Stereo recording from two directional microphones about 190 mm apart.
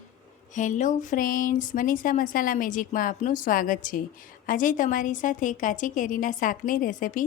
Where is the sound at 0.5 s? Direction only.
40° left (ahead or behind).